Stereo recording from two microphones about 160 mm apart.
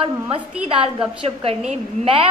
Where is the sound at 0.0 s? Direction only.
35° right (ahead or behind).